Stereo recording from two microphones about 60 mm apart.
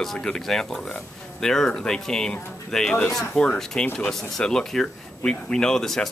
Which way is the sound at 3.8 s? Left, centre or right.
Left.